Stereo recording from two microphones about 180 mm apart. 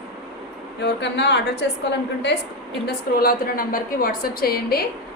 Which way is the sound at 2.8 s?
55° left (ahead or behind).